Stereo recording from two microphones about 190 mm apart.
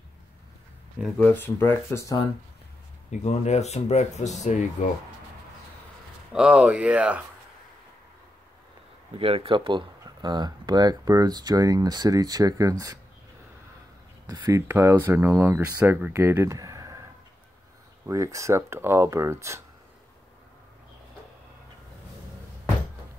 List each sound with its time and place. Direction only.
1.1 s speech: 10° left (ahead or behind)
3.1 s speech: 35° left (ahead or behind)
6.3 s speech: 5° right (ahead or behind)
9.2 s speech: 30° right (ahead or behind)
14.2 s speech: 20° right (ahead or behind)
18.0 s speech: 15° right (ahead or behind)